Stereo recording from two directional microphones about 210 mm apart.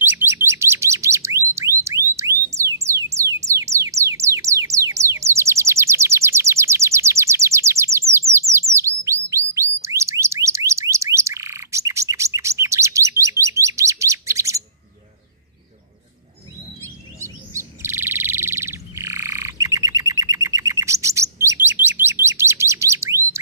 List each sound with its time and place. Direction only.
0.0 s bird: 10° right (ahead or behind)
1.5 s music: 15° right (ahead or behind)
8.3 s bird: 15° right (ahead or behind)
17.2 s bird: 10° right (ahead or behind)